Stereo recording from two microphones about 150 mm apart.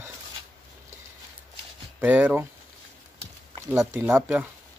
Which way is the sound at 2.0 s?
10° right (ahead or behind).